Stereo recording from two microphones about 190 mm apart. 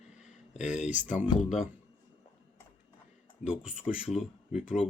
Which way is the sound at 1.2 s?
5° right (ahead or behind).